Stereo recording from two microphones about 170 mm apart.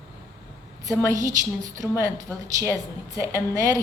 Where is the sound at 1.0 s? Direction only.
20° right (ahead or behind).